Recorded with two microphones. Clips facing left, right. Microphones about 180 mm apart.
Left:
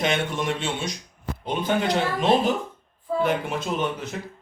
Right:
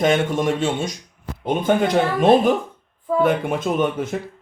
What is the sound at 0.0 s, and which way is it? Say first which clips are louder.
A man's voice: right 7 dB; 45° right (ahead or behind).